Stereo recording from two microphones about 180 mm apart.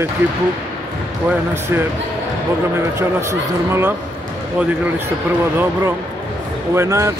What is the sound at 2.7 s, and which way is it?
Speech, 15° right (ahead or behind).